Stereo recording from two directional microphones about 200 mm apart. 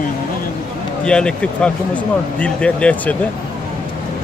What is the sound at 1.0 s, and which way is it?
Speech, 5° left (ahead or behind).